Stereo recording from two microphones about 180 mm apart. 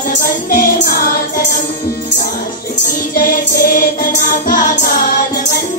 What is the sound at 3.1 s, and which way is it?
Music, 50° left (ahead or behind).